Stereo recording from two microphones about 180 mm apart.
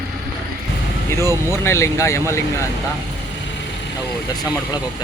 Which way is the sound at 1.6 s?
15° left (ahead or behind).